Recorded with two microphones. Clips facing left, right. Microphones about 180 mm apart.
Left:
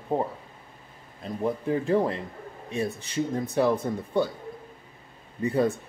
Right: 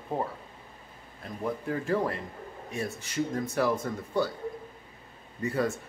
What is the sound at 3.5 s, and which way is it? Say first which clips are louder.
Speech: left 4 dB; 20° left (ahead or behind).